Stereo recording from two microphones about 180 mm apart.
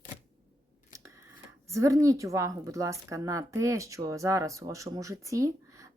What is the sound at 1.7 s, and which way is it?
Speech, 15° right (ahead or behind).